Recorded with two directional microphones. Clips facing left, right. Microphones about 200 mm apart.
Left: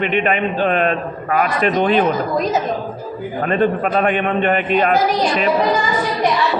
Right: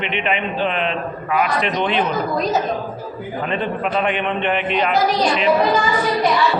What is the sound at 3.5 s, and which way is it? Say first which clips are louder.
A man's voice: left 6 dB; 45° left (ahead or behind).